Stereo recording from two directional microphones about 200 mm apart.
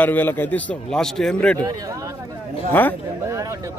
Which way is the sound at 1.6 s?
20° right (ahead or behind).